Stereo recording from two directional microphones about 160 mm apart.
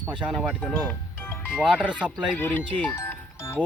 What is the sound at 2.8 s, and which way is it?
Music, 15° left (ahead or behind).